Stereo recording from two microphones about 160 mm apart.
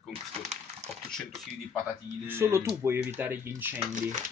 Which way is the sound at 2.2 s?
15° right (ahead or behind).